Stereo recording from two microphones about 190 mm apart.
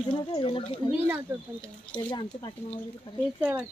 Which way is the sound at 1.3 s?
15° right (ahead or behind).